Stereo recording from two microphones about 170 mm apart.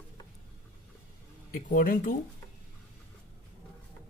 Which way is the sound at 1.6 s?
50° left (ahead or behind).